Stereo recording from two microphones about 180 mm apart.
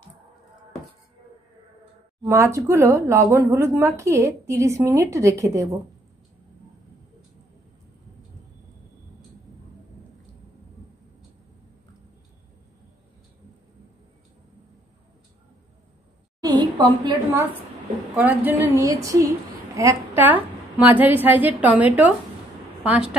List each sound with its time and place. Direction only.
2.2 s speech: 15° right (ahead or behind)
16.4 s a sound: 25° right (ahead or behind)
18.1 s speech: 10° right (ahead or behind)